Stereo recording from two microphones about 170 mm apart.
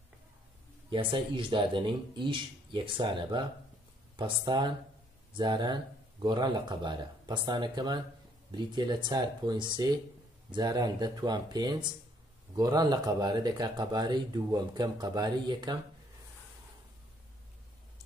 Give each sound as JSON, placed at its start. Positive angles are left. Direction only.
{"t": 0.8, "sound": "speech", "side_deg": -30}